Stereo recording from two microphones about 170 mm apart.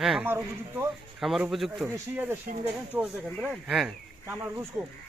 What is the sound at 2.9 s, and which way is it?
Speech, 5° right (ahead or behind).